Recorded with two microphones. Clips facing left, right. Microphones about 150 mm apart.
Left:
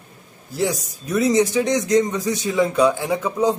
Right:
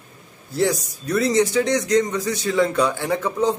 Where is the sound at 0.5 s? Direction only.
10° left (ahead or behind).